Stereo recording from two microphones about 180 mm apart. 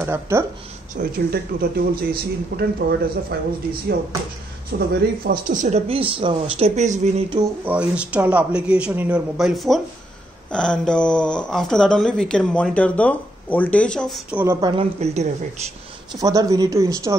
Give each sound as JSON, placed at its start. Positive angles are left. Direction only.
{"t": 0.0, "sound": "speech", "side_deg": -15}
{"t": 0.9, "sound": "speech", "side_deg": -55}
{"t": 4.7, "sound": "speech", "side_deg": -55}
{"t": 7.6, "sound": "speech", "side_deg": -5}
{"t": 14.4, "sound": "speech", "side_deg": -15}
{"t": 14.7, "sound": "speech", "side_deg": -35}
{"t": 16.1, "sound": "speech", "side_deg": -20}